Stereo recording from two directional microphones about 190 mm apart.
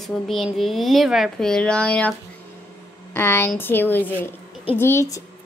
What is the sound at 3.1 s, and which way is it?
Child singing, 10° left (ahead or behind).